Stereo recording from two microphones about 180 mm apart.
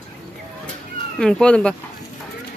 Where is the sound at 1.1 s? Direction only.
5° left (ahead or behind).